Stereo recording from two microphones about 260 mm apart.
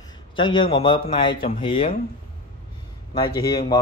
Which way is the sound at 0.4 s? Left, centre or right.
Centre.